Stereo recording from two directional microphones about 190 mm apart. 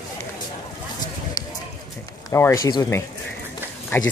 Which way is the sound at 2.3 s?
15° left (ahead or behind).